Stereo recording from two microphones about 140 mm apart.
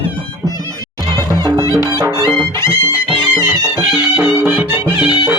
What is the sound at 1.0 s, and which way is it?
Music, 30° right (ahead or behind).